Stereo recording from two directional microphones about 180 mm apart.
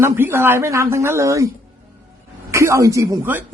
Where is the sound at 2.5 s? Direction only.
15° right (ahead or behind).